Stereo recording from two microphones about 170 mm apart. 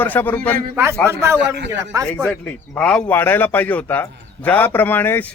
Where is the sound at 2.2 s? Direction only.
5° left (ahead or behind).